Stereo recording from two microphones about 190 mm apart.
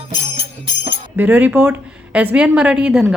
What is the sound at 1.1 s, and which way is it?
A woman's voice, 10° right (ahead or behind).